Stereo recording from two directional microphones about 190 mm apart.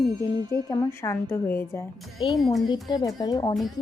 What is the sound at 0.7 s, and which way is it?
A woman's voice, 15° left (ahead or behind).